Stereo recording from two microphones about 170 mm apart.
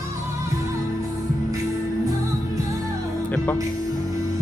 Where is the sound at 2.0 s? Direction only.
20° right (ahead or behind).